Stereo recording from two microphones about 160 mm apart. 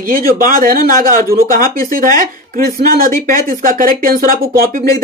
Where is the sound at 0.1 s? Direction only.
65° right (ahead or behind).